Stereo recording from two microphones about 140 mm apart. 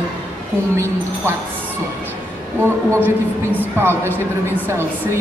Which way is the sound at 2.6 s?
15° right (ahead or behind).